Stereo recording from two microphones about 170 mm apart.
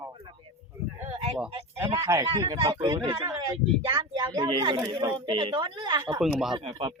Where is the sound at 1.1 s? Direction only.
35° right (ahead or behind).